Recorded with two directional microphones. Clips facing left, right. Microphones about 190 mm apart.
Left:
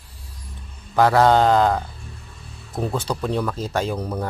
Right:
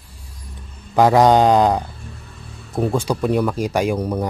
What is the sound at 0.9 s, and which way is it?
Speech, 15° right (ahead or behind).